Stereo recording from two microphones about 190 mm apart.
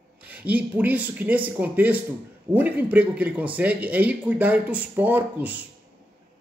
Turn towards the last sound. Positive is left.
turn(degrees=-10)  # may be behind; listen again after turning